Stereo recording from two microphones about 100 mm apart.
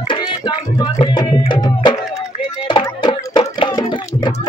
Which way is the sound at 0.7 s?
50° left (ahead or behind).